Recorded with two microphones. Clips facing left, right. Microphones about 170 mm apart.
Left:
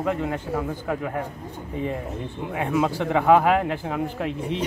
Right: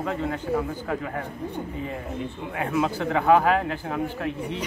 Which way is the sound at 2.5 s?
15° left (ahead or behind).